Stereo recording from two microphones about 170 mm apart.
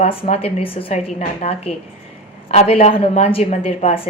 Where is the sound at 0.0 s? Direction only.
35° left (ahead or behind).